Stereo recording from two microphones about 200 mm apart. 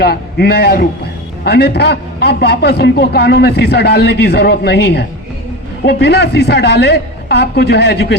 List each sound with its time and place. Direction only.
0.0 s a man's voice: 50° left (ahead or behind)